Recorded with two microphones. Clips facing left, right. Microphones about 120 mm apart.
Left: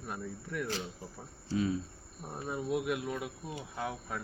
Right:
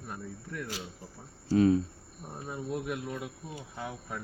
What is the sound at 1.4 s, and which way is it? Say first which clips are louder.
Speech: right 8 dB; 50° right (ahead or behind).